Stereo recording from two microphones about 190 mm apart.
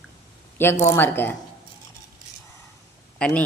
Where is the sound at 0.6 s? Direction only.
15° left (ahead or behind).